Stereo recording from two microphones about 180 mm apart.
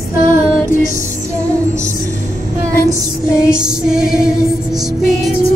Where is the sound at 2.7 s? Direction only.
15° left (ahead or behind).